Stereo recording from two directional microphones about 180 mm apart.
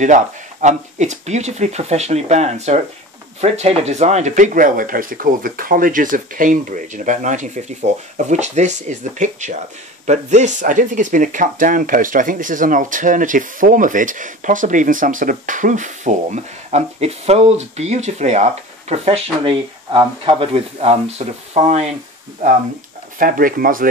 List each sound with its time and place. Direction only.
0.0 s speech: 40° right (ahead or behind)
23.1 s speech: 50° right (ahead or behind)